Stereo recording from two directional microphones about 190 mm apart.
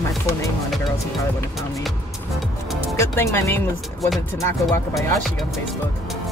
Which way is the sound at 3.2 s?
15° left (ahead or behind).